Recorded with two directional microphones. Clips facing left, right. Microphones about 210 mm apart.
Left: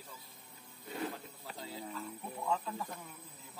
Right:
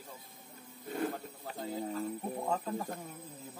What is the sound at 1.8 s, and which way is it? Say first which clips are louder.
Speech: right 10 dB; 40° right (ahead or behind).